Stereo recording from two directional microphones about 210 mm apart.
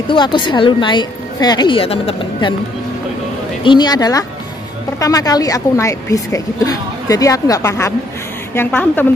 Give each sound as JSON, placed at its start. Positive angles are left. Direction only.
{"t": 0.1, "sound": "a woman's voice", "side_deg": 20}
{"t": 3.6, "sound": "a woman's voice", "side_deg": 20}